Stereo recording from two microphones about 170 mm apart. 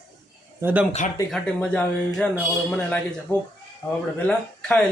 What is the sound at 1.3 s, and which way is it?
Speech, 5° left (ahead or behind).